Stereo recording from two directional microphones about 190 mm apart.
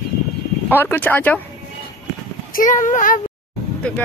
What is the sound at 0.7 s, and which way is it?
Speech, 10° left (ahead or behind).